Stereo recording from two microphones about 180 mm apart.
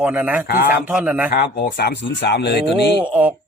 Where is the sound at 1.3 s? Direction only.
60° left (ahead or behind).